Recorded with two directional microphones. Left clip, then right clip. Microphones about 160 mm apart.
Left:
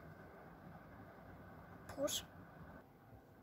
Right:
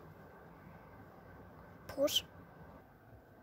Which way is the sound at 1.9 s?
65° right (ahead or behind).